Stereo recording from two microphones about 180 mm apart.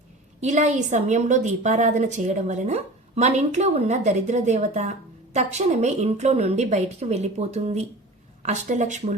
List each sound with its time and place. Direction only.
0.4 s a woman's voice: 40° right (ahead or behind)